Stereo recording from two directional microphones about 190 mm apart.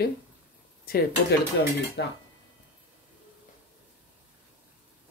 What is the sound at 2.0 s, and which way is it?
Speech, 60° left (ahead or behind).